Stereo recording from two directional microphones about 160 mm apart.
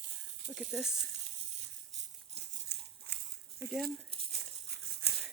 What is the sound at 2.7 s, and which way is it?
Crumpling, 90° right.